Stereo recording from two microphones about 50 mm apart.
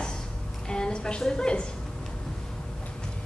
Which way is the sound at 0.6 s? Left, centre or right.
Centre.